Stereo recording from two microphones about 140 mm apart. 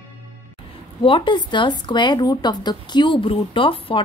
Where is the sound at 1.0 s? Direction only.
35° left (ahead or behind).